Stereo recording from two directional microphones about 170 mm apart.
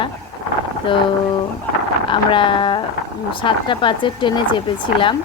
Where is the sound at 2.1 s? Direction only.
30° left (ahead or behind).